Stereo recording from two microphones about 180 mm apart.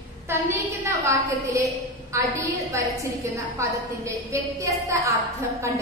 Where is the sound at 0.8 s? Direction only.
15° right (ahead or behind).